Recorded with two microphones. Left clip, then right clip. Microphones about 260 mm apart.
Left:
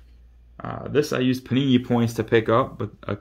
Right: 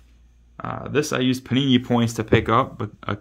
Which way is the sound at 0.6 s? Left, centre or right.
Centre.